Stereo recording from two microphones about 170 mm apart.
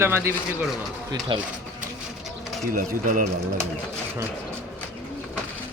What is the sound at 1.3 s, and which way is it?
Speech, 30° right (ahead or behind).